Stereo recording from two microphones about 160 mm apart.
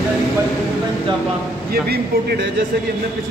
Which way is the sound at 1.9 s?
90° right.